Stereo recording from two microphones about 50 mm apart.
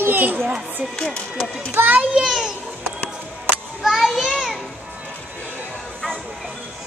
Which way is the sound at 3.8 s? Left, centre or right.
Centre.